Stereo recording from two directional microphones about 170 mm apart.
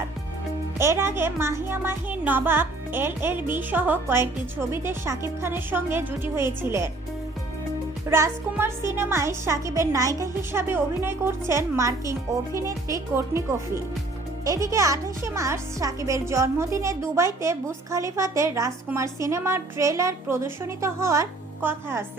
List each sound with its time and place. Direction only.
0.8 s speech: 15° right (ahead or behind)
8.1 s speech: 15° right (ahead or behind)